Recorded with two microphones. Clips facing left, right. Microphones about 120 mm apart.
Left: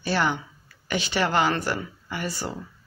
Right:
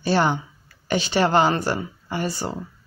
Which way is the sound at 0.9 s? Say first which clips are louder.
Right 5 dB; 35° right (ahead or behind).